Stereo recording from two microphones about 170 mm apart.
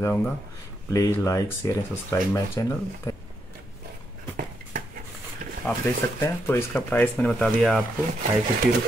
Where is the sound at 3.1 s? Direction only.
20° left (ahead or behind).